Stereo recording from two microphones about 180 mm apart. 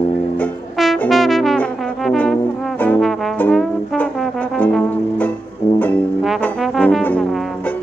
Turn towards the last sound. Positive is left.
turn(degrees=5)  # may be behind; listen again after turning